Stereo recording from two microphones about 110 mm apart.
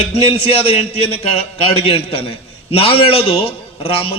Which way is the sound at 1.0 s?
60° left (ahead or behind).